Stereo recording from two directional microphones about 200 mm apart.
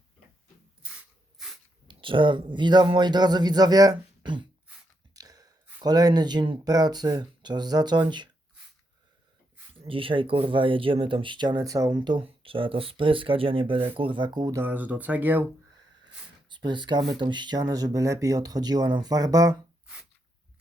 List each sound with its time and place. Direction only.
1.9 s speech: 25° right (ahead or behind)
9.7 s speech: 25° right (ahead or behind)
14.6 s speech: 10° right (ahead or behind)
16.5 s speech: 25° right (ahead or behind)